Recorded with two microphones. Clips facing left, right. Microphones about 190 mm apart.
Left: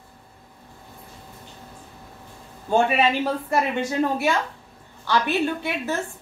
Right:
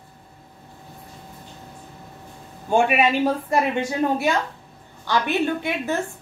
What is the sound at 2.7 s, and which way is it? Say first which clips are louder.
A woman's voice: right 1 dB; 15° right (ahead or behind).